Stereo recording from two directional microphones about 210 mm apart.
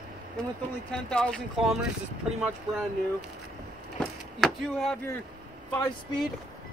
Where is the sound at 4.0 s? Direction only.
Centre (ahead or behind).